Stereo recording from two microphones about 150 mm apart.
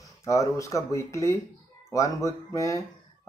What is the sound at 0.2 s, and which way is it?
Speech, 20° left (ahead or behind).